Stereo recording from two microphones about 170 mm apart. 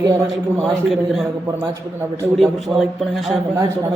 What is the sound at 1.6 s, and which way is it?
Speech, 15° right (ahead or behind).